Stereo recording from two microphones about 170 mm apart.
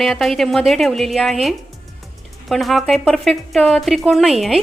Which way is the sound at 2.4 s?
Centre (ahead or behind).